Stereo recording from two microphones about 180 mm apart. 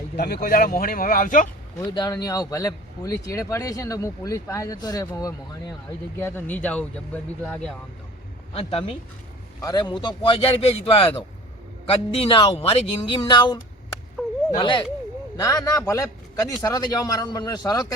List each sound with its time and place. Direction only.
0.2 s speech: 55° left (ahead or behind)
1.8 s speech: 20° left (ahead or behind); by 7.8 s 5° left (ahead or behind)
8.5 s speech: 30° left (ahead or behind)
14.6 s speech: 25° left (ahead or behind)